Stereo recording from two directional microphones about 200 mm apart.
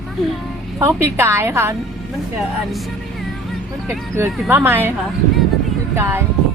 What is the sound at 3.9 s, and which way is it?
Speech, 10° right (ahead or behind).